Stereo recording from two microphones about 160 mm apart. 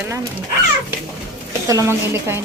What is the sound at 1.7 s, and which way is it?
Speech, 20° right (ahead or behind).